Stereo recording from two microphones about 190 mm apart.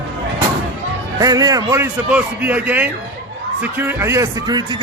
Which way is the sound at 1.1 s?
20° right (ahead or behind).